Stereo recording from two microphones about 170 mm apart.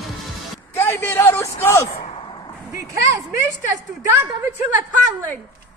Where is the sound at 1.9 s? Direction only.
35° left (ahead or behind).